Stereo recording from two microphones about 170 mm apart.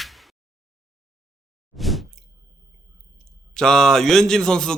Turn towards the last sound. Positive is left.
turn(degrees=5)  # may be behind; listen again after turning